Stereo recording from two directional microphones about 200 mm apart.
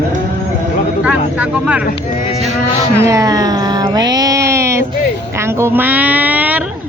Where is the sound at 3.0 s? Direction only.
15° right (ahead or behind).